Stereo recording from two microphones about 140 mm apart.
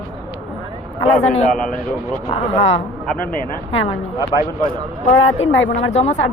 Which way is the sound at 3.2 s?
90° left.